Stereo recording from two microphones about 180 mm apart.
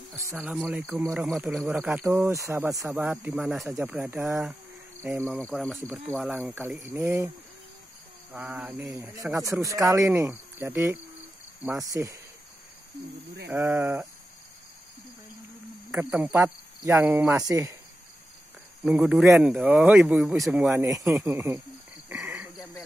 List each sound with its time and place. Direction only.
0.4 s speech: 5° right (ahead or behind)
5.2 s speech: centre (ahead or behind)
8.3 s speech: 5° right (ahead or behind)
8.7 s speech: 15° right (ahead or behind)
13.5 s speech: 10° right (ahead or behind)
15.9 s speech: 5° right (ahead or behind)
18.9 s speech: 5° right (ahead or behind)
20.8 s speech: 15° right (ahead or behind)